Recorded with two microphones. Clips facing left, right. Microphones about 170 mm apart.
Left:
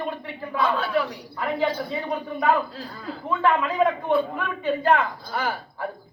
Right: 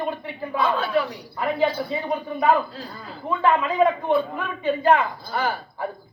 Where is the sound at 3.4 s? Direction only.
5° right (ahead or behind).